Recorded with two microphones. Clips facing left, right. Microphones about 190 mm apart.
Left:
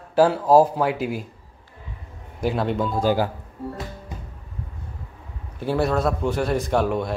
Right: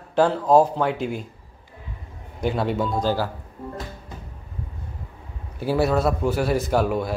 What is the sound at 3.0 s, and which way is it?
Speech, 15° left (ahead or behind).